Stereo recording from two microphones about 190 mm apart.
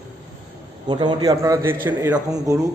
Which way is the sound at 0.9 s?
25° right (ahead or behind).